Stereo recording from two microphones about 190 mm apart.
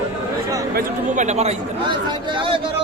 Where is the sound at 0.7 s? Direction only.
45° right (ahead or behind).